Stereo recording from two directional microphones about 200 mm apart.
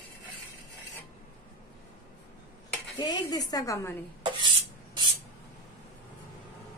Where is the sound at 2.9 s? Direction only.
20° left (ahead or behind).